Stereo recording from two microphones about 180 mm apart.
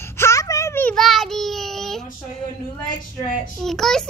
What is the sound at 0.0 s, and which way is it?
Child singing, 15° left (ahead or behind).